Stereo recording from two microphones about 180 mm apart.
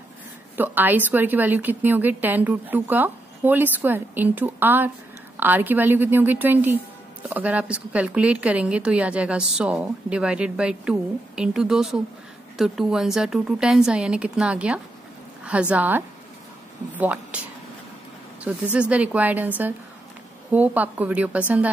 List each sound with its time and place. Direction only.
0.6 s a woman's voice: 10° right (ahead or behind)
17.0 s a woman's voice: 10° right (ahead or behind)
18.4 s a woman's voice: 5° right (ahead or behind)